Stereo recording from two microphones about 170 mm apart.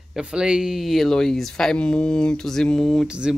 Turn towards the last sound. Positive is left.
turn(degrees=-5)  # may be behind; listen again after turning